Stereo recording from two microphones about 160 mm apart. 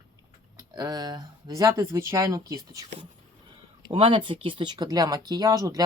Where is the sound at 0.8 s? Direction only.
25° right (ahead or behind).